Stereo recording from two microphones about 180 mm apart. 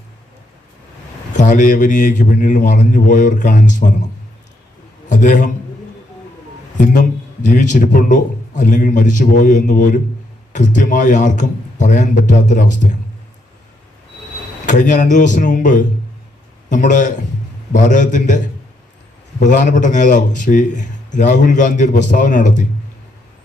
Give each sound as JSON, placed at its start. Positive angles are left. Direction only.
{"t": 1.3, "sound": "a man's voice", "side_deg": 45}
{"t": 5.0, "sound": "a man's voice", "side_deg": 45}
{"t": 6.7, "sound": "a man's voice", "side_deg": 45}
{"t": 14.7, "sound": "a man's voice", "side_deg": 45}